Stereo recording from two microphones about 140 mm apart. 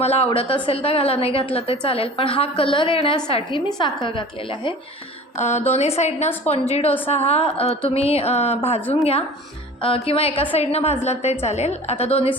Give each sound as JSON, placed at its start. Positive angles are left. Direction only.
{"t": 0.0, "sound": "a woman's voice", "side_deg": 50}
{"t": 5.4, "sound": "a woman's voice", "side_deg": 55}
{"t": 9.8, "sound": "a woman's voice", "side_deg": 40}